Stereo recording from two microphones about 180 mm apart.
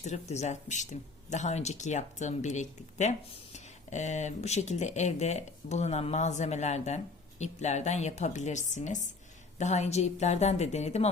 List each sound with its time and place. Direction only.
0.0 s speech: 40° left (ahead or behind)